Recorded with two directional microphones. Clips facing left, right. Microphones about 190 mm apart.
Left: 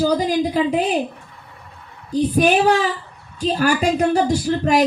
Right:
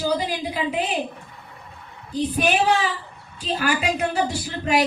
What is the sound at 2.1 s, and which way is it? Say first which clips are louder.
Speech: left 6 dB; 45° left (ahead or behind).